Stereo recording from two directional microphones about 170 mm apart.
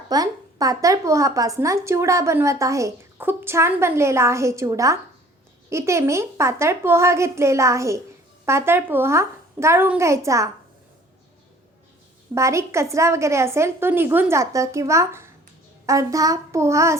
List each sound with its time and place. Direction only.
0.1 s a woman's voice: 20° right (ahead or behind)
12.3 s a woman's voice: 15° right (ahead or behind)